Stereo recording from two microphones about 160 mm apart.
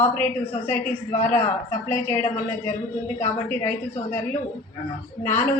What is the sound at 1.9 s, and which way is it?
Speech, 15° left (ahead or behind).